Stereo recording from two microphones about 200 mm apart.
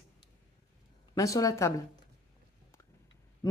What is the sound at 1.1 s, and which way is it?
Speech, 15° left (ahead or behind).